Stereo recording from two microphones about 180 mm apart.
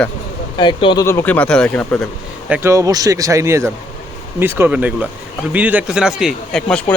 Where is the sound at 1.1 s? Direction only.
10° left (ahead or behind).